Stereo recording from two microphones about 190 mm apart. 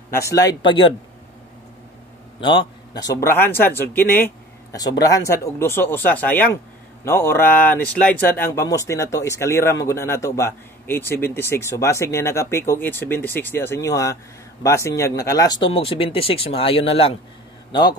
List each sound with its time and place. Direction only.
0.1 s speech: 15° left (ahead or behind)
2.4 s speech: 25° left (ahead or behind)